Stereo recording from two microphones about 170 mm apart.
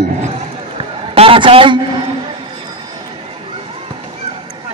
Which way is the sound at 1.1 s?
35° right (ahead or behind).